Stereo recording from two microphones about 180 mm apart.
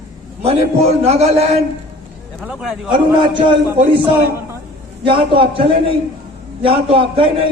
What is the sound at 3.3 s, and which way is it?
Speech, 25° right (ahead or behind).